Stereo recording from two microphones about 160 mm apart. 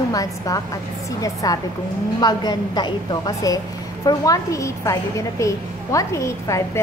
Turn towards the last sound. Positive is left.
turn(degrees=20)  # may be behind; listen again after turning